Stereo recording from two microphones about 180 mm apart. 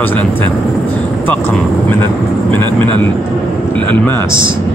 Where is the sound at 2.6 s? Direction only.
25° right (ahead or behind).